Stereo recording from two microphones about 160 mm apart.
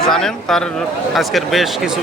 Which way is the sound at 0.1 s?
5° left (ahead or behind).